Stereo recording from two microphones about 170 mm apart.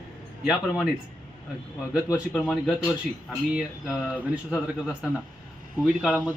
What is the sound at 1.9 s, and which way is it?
Speech, 15° left (ahead or behind).